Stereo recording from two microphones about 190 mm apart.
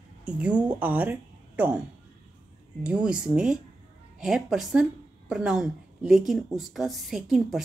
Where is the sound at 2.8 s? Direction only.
5° right (ahead or behind).